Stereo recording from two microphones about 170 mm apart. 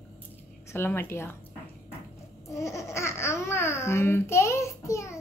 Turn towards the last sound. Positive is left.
turn(degrees=15)  # may be behind; listen again after turning